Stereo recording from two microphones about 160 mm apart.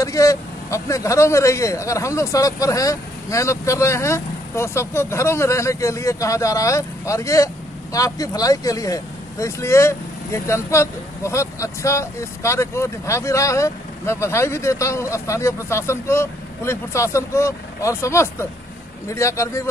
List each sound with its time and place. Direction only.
0.0 s speech: 20° left (ahead or behind)